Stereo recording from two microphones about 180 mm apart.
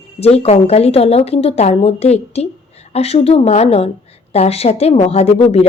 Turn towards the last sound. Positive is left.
turn(degrees=35)  # may be behind; listen again after turning